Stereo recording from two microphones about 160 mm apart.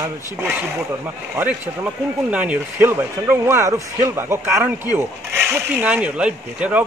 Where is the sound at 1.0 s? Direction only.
10° right (ahead or behind).